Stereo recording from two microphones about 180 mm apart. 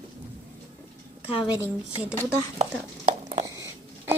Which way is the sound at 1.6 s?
10° right (ahead or behind).